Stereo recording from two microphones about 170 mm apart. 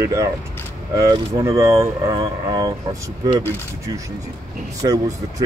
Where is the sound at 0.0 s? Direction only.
20° right (ahead or behind).